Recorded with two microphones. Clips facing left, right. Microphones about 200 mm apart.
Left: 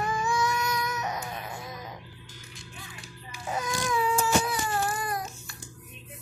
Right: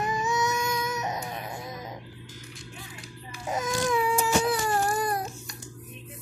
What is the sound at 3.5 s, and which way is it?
Baby cry, 20° right (ahead or behind).